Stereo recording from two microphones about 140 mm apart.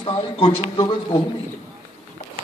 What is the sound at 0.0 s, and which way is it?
A man's voice, 35° left (ahead or behind).